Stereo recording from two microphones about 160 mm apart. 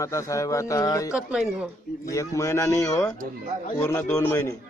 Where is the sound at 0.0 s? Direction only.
20° left (ahead or behind).